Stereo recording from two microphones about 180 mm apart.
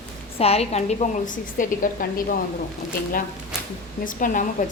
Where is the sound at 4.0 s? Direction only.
50° left (ahead or behind).